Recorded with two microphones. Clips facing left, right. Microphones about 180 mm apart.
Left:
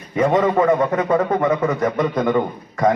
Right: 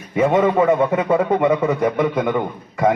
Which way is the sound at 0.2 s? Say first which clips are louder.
Right 1 dB; 5° right (ahead or behind).